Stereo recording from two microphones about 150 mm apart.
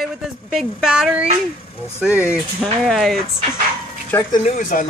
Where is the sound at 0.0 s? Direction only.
Centre (ahead or behind).